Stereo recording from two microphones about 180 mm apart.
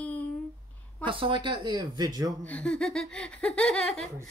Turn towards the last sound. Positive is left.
turn(degrees=0)  # may be behind; listen again after turning